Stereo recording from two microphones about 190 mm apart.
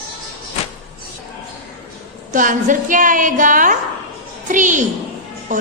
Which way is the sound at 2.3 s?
45° right (ahead or behind).